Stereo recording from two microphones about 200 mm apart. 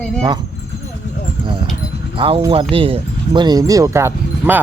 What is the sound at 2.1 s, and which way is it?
Speech, 25° right (ahead or behind).